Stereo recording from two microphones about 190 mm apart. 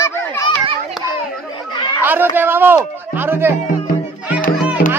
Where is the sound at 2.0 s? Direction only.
10° right (ahead or behind).